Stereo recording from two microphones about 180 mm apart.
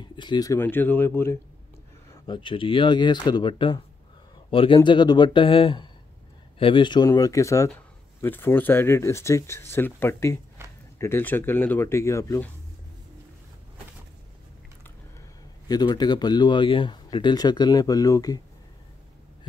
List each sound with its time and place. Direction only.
0.0 s speech: 25° left (ahead or behind)
2.2 s speech: 25° left (ahead or behind)
15.7 s speech: 25° left (ahead or behind)